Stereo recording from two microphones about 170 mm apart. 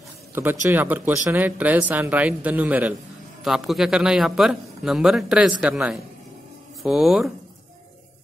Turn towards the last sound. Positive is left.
turn(degrees=0)  # may be behind; listen again after turning